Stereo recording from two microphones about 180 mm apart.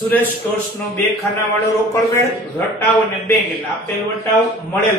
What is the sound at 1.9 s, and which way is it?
Speech, 15° left (ahead or behind).